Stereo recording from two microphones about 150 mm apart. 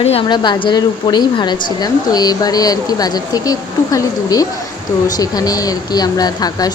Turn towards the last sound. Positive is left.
turn(degrees=25)  # may be behind; listen again after turning